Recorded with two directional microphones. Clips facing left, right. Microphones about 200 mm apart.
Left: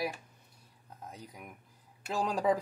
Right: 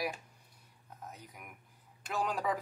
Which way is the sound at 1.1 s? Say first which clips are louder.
Left 3 dB; 30° left (ahead or behind).